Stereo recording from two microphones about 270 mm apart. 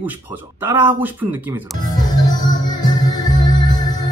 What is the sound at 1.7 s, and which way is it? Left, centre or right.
Music, centre.